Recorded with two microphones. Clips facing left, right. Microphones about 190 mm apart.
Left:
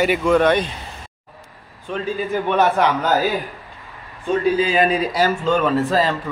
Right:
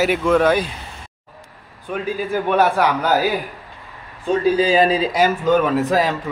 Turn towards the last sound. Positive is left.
turn(degrees=-15)  # may be behind; listen again after turning